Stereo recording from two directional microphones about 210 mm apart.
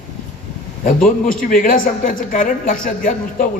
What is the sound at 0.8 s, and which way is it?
A man's voice, 40° left (ahead or behind).